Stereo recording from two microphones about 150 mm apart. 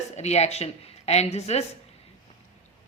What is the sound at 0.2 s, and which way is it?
Speech, 45° left (ahead or behind).